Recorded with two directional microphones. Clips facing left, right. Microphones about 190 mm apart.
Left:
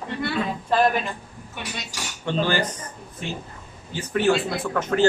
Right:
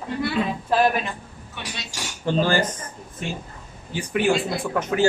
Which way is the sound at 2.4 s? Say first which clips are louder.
Right 2 dB; 45° right (ahead or behind).